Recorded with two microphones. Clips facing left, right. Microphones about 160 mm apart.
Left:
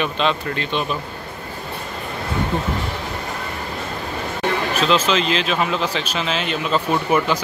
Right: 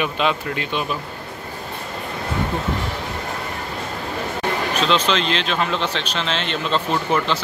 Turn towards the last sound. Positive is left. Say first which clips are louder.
# left 2 dB
turn(degrees=10)  # may be behind; listen again after turning